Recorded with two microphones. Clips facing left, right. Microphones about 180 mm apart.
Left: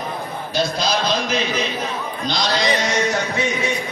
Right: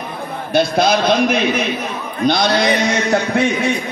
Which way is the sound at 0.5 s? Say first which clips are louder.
Right 7 dB; 55° right (ahead or behind).